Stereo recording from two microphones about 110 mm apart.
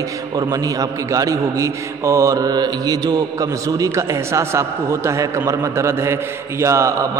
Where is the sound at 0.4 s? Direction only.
35° right (ahead or behind).